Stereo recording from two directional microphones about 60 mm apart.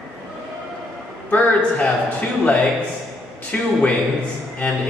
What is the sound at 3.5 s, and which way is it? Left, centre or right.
Speech, left.